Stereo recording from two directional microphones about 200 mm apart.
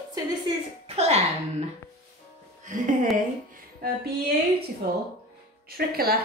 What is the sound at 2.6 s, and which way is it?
Speech, 40° right (ahead or behind).